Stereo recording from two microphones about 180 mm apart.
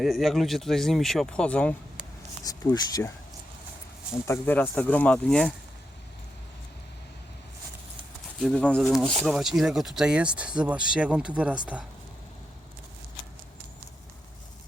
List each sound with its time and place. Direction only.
0.0 s speech: centre (ahead or behind)
2.4 s speech: 20° left (ahead or behind)
4.3 s speech: 10° left (ahead or behind)
8.4 s speech: centre (ahead or behind)